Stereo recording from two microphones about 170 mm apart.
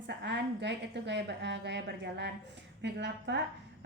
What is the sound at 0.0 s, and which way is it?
A woman's voice, 90° right.